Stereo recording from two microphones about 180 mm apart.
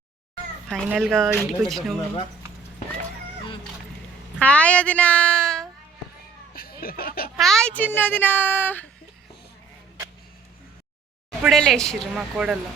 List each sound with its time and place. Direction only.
0.7 s speech: 5° right (ahead or behind)
4.4 s speech: 5° left (ahead or behind)
6.5 s a sound: 55° left (ahead or behind)
7.3 s speech: centre (ahead or behind)
11.4 s speech: centre (ahead or behind)